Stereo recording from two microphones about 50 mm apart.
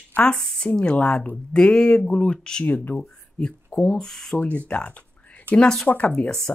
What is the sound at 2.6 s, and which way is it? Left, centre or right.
Speech, left.